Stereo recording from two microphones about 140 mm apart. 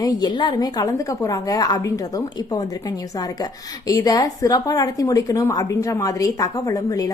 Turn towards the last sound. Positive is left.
turn(degrees=25)  # may be behind; listen again after turning